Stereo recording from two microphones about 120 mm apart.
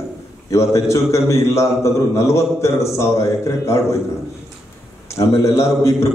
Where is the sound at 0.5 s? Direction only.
25° left (ahead or behind).